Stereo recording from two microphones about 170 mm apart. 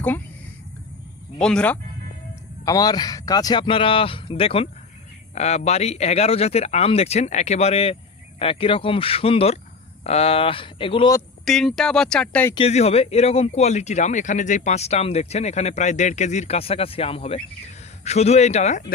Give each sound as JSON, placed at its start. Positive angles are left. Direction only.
{"t": 1.4, "sound": "speech", "side_deg": 5}
{"t": 2.6, "sound": "speech", "side_deg": 20}
{"t": 11.4, "sound": "speech", "side_deg": 0}
{"t": 12.5, "sound": "speech", "side_deg": 40}